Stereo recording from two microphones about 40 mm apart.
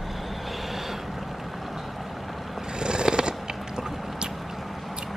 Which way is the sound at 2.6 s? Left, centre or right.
Centre.